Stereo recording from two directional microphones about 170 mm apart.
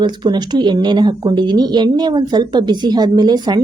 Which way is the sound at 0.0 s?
25° right (ahead or behind).